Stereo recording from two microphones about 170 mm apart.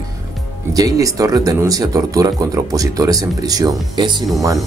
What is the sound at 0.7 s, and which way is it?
Speech, 20° right (ahead or behind).